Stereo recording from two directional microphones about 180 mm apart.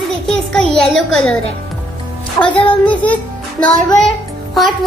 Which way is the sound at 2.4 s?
15° left (ahead or behind).